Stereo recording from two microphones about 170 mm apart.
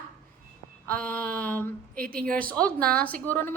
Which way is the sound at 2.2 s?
55° right (ahead or behind).